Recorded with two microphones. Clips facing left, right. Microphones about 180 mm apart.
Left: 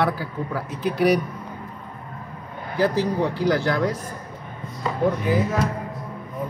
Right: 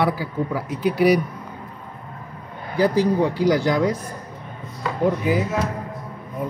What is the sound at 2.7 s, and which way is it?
Speech, 10° right (ahead or behind).